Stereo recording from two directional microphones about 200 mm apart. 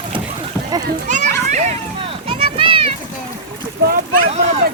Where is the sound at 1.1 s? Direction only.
35° right (ahead or behind).